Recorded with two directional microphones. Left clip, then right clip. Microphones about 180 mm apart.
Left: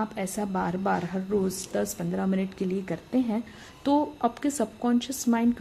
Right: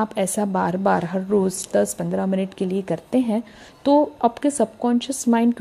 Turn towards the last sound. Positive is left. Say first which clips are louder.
# right 6 dB
turn(degrees=-35)  # may be behind; listen again after turning